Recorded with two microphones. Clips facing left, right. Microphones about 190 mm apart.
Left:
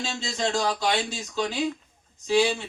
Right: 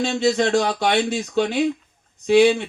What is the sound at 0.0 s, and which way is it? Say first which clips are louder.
Speech: right 10 dB; 60° right (ahead or behind).